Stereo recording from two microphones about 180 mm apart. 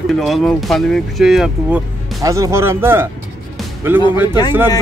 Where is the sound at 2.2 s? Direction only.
15° right (ahead or behind).